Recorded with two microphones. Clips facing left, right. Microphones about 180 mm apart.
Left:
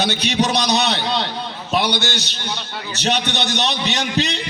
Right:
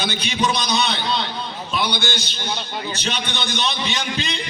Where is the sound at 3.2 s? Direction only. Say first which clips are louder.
Left 4 dB; 70° left (ahead or behind).